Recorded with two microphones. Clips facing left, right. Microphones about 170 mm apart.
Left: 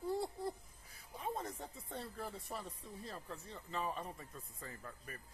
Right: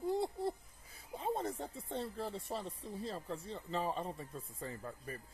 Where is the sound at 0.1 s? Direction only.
25° right (ahead or behind).